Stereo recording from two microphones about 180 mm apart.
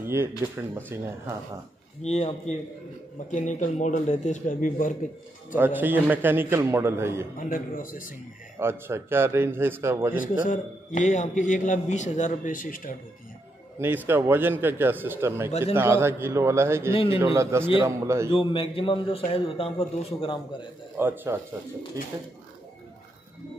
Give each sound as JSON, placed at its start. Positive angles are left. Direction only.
{"t": 0.0, "sound": "a sound", "side_deg": -15}
{"t": 0.7, "sound": "a man's voice", "side_deg": -15}
{"t": 2.0, "sound": "a man's voice", "side_deg": 40}
{"t": 5.6, "sound": "a man's voice", "side_deg": -10}
{"t": 7.3, "sound": "a man's voice", "side_deg": 50}
{"t": 8.5, "sound": "a man's voice", "side_deg": -15}
{"t": 10.1, "sound": "a man's voice", "side_deg": 45}
{"t": 13.7, "sound": "a man's voice", "side_deg": -10}
{"t": 16.9, "sound": "a man's voice", "side_deg": 30}
{"t": 17.2, "sound": "a man's voice", "side_deg": -15}
{"t": 18.3, "sound": "a man's voice", "side_deg": 30}
{"t": 21.0, "sound": "a man's voice", "side_deg": -10}